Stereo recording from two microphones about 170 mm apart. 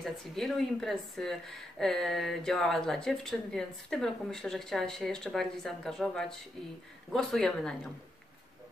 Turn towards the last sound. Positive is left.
turn(degrees=5)  # may be behind; listen again after turning